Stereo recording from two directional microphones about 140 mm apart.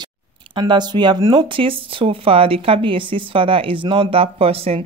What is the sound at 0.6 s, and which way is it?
Speech, 30° right (ahead or behind).